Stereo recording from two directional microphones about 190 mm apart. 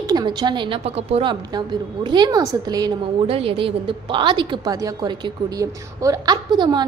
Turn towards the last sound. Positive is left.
turn(degrees=-25)  # may be behind; listen again after turning